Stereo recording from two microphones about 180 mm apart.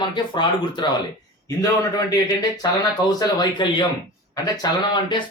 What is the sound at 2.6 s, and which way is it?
Speech, 25° left (ahead or behind).